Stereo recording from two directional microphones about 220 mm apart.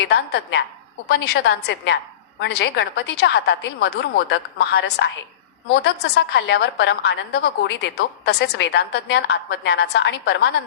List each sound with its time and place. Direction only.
0.1 s a woman's voice: 45° left (ahead or behind)